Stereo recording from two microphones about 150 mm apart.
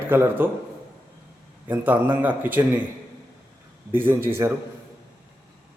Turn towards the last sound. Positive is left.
turn(degrees=-15)  # may be behind; listen again after turning